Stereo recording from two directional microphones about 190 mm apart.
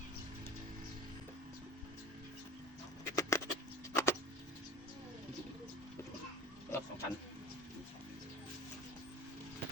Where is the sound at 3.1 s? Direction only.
15° left (ahead or behind).